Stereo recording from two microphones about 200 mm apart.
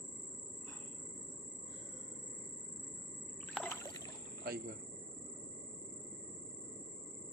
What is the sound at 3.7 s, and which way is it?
Rowboat, 15° left (ahead or behind).